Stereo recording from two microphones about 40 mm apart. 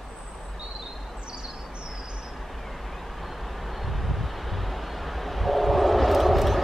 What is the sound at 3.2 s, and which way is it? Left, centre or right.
Vehicle, centre.